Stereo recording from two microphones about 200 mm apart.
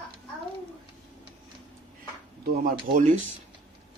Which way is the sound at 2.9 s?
40° right (ahead or behind).